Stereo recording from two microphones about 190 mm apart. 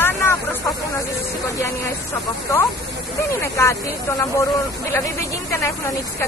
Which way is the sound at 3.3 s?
15° left (ahead or behind).